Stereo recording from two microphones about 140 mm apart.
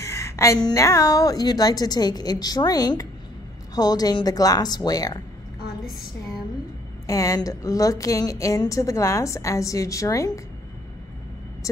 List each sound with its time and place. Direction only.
0.0 s a woman's voice: 20° left (ahead or behind)
7.1 s a woman's voice: 25° left (ahead or behind)
11.6 s vehicle: 25° left (ahead or behind)